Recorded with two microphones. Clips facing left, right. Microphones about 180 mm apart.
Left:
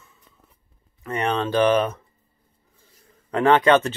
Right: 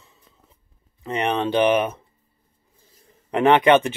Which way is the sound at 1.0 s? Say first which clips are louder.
Right 1 dB; 15° right (ahead or behind).